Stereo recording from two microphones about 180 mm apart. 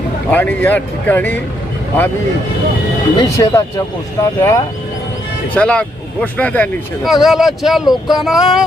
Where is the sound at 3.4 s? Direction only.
15° left (ahead or behind).